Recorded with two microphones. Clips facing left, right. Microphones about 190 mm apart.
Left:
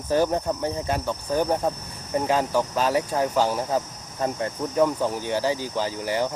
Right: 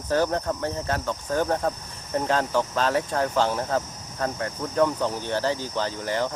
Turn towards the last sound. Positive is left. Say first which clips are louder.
# left 1 dB
turn(degrees=10)  # may be behind; listen again after turning